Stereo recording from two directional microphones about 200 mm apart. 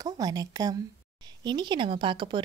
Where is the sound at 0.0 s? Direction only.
20° right (ahead or behind).